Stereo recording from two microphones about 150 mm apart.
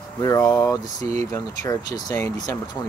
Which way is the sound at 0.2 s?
25° left (ahead or behind).